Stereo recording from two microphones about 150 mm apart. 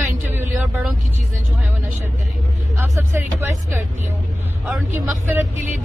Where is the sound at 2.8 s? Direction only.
15° right (ahead or behind).